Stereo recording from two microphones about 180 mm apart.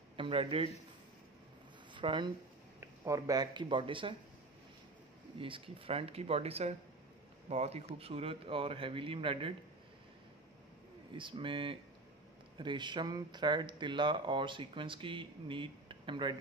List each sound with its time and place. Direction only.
0.2 s speech: 30° right (ahead or behind)
2.0 s speech: 25° right (ahead or behind)
5.4 s a man's voice: 30° right (ahead or behind)
11.1 s speech: 30° right (ahead or behind)